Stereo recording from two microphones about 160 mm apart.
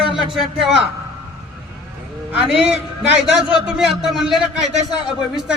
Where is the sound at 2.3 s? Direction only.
10° right (ahead or behind).